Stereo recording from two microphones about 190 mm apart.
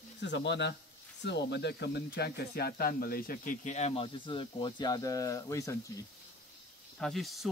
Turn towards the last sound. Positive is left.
turn(degrees=0)  # may be behind; listen again after turning